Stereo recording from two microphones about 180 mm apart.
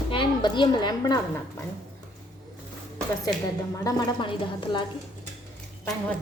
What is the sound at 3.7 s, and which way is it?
A woman's voice, 20° left (ahead or behind).